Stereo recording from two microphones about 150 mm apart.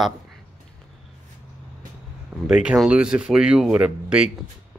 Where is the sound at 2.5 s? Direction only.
5° right (ahead or behind).